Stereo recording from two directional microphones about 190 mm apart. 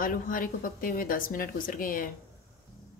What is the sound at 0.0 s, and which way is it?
Speech, 45° left (ahead or behind).